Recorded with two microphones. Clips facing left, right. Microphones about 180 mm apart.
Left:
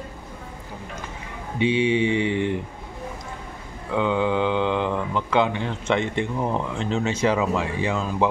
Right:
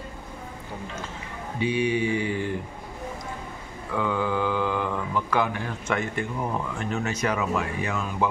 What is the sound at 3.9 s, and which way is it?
Speech, 20° left (ahead or behind).